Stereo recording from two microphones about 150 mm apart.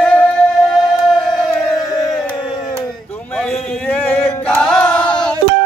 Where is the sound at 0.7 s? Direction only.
Centre (ahead or behind).